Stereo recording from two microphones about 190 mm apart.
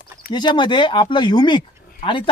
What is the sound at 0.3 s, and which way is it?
Speech, 25° left (ahead or behind).